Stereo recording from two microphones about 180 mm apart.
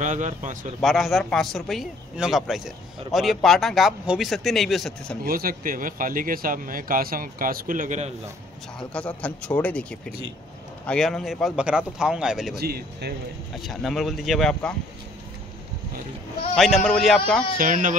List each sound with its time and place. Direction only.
0.0 s speech: 40° right (ahead or behind)
0.7 s a man's voice: centre (ahead or behind)
5.2 s speech: 55° right (ahead or behind)
8.7 s a man's voice: 5° left (ahead or behind)
12.5 s speech: 60° right (ahead or behind)
13.6 s a man's voice: centre (ahead or behind)
16.5 s a man's voice: centre (ahead or behind)
17.6 s speech: 45° right (ahead or behind)